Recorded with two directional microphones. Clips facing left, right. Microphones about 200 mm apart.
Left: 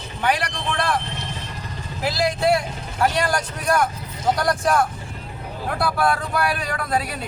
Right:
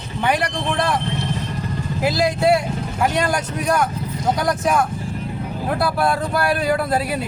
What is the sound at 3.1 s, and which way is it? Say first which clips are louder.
Speech: right 2 dB; 20° right (ahead or behind).